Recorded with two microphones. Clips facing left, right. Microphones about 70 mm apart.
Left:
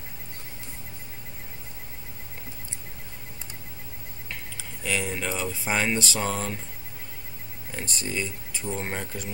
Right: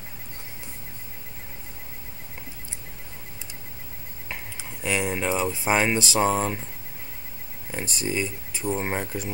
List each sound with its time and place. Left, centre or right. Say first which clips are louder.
4.3 s speech: right 3 dB; centre
7.7 s speech: right 4 dB; centre